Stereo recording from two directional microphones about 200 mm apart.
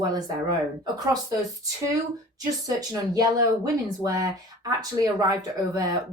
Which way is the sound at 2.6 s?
15° right (ahead or behind).